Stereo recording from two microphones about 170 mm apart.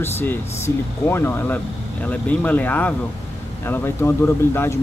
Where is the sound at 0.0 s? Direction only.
10° left (ahead or behind).